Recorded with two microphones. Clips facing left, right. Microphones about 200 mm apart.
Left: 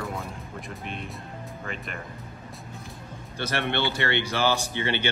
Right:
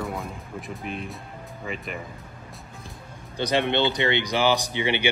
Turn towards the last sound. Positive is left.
turn(degrees=-15)  # may be behind; listen again after turning